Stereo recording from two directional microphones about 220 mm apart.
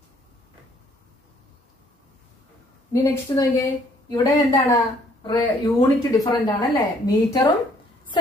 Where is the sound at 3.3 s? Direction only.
15° left (ahead or behind).